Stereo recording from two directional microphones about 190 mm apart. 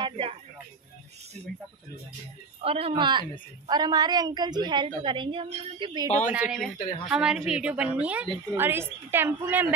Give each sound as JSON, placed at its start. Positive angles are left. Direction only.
{"t": 0.0, "sound": "a sound", "side_deg": -30}
{"t": 2.6, "sound": "a woman's voice", "side_deg": -30}
{"t": 6.0, "sound": "speech", "side_deg": 35}
{"t": 6.3, "sound": "a woman's voice", "side_deg": -5}